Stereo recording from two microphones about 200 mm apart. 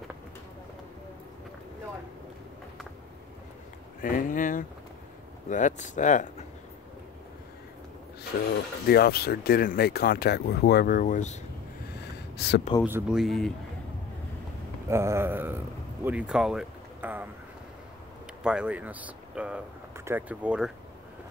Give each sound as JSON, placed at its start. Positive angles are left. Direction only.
{"t": 4.0, "sound": "speech", "side_deg": 40}
{"t": 8.8, "sound": "speech", "side_deg": 50}
{"t": 12.4, "sound": "speech", "side_deg": 55}
{"t": 12.8, "sound": "speech", "side_deg": -5}
{"t": 14.9, "sound": "speech", "side_deg": -15}
{"t": 18.4, "sound": "speech", "side_deg": -5}